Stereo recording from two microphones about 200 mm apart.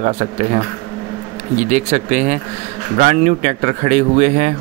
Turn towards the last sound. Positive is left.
turn(degrees=-35)  # may be behind; listen again after turning